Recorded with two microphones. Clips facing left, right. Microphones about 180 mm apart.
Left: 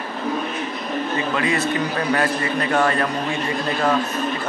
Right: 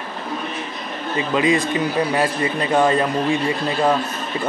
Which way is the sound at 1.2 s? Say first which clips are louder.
Right 6 dB; 20° right (ahead or behind).